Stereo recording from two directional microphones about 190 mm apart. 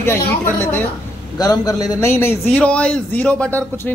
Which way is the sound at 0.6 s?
10° left (ahead or behind).